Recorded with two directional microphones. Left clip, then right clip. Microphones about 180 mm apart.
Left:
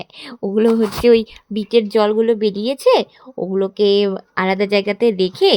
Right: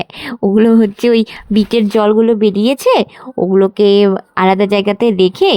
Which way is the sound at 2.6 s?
35° right (ahead or behind).